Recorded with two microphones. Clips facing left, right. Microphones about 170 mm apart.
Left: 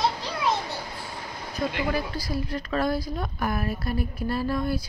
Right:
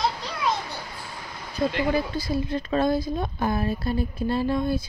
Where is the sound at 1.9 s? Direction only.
25° right (ahead or behind).